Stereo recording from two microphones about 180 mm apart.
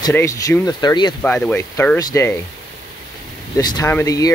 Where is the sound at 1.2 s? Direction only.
10° left (ahead or behind).